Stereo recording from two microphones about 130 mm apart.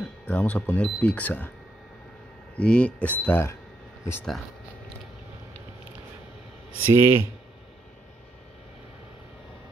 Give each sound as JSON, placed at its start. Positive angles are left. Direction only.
{"t": 0.3, "sound": "speech", "side_deg": 10}
{"t": 2.5, "sound": "speech", "side_deg": 10}
{"t": 6.8, "sound": "speech", "side_deg": -20}